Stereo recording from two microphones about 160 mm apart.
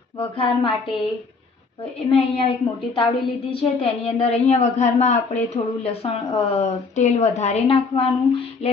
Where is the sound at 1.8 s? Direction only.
35° left (ahead or behind).